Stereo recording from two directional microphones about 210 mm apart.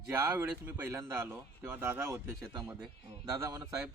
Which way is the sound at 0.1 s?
10° right (ahead or behind).